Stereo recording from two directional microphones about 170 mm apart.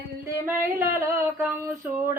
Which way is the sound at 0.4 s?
10° right (ahead or behind).